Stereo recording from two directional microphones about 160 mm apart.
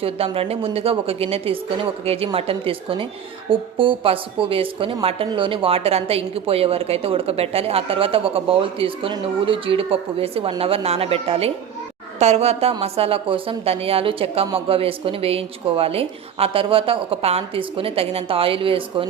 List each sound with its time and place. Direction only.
0.0 s a woman's voice: 35° right (ahead or behind)